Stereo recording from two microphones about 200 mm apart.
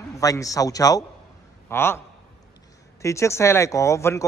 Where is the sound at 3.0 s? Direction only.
15° left (ahead or behind).